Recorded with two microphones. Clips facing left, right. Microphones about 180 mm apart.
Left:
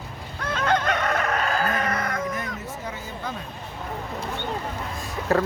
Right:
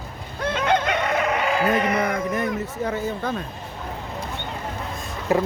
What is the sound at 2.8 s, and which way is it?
Speech, 60° right (ahead or behind).